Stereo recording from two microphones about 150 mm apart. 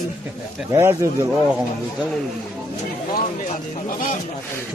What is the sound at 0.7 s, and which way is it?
Speech, 20° right (ahead or behind).